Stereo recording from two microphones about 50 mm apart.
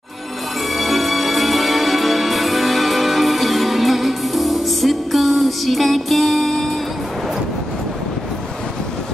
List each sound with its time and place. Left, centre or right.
0.7 s music: centre